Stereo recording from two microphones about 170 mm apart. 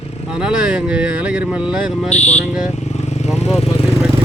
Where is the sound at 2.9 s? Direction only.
40° left (ahead or behind).